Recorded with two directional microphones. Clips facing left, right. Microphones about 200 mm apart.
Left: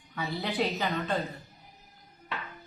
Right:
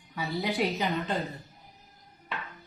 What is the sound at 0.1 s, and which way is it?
A woman's voice, 15° right (ahead or behind).